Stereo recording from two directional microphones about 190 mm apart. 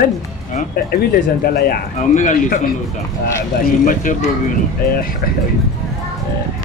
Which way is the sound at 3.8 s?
45° left (ahead or behind).